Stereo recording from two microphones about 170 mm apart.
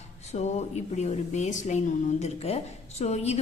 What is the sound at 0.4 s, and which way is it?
Speech, 40° left (ahead or behind).